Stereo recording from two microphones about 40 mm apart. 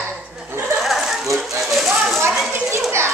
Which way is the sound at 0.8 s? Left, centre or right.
Centre.